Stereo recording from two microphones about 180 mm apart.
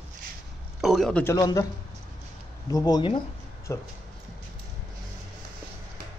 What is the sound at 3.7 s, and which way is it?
Speech, 15° left (ahead or behind).